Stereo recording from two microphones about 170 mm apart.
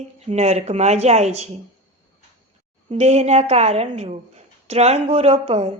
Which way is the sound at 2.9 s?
40° right (ahead or behind).